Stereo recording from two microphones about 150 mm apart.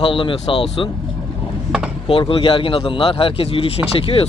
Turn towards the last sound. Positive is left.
turn(degrees=40)  # may be behind; listen again after turning